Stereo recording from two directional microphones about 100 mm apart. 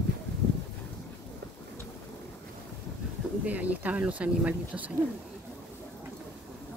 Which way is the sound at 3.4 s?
15° right (ahead or behind).